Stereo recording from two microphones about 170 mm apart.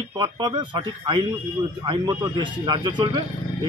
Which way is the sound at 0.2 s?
25° right (ahead or behind).